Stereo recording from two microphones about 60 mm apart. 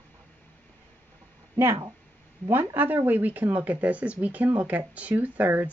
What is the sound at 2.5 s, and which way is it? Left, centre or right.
A woman's voice, right.